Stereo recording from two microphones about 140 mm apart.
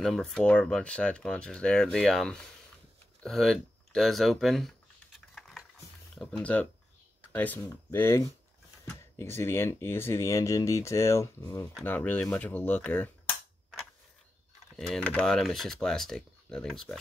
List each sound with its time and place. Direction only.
0.0 s speech: centre (ahead or behind)
3.2 s a sound: centre (ahead or behind)
6.1 s speech: 5° left (ahead or behind)
14.8 s speech: 5° left (ahead or behind)